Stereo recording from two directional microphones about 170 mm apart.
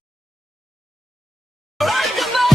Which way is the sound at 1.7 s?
Centre (ahead or behind).